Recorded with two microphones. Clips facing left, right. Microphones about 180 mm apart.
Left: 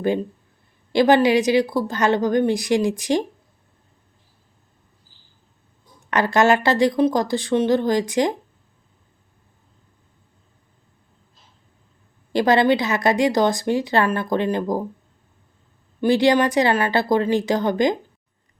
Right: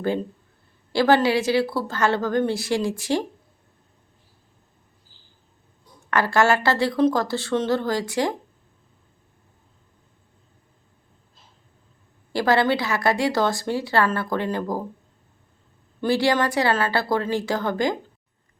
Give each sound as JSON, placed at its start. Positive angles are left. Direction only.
{"t": 0.9, "sound": "a woman's voice", "side_deg": 20}
{"t": 6.1, "sound": "a woman's voice", "side_deg": 20}
{"t": 12.3, "sound": "speech", "side_deg": 20}
{"t": 16.0, "sound": "speech", "side_deg": 20}